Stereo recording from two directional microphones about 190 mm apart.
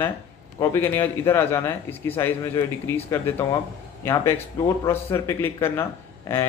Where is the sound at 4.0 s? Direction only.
15° left (ahead or behind).